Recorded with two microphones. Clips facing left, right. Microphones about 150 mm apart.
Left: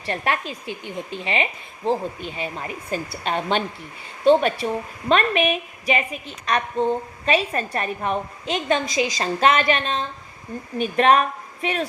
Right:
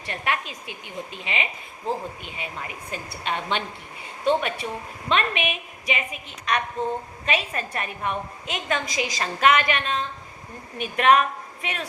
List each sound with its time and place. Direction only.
0.0 s a woman's voice: 35° left (ahead or behind)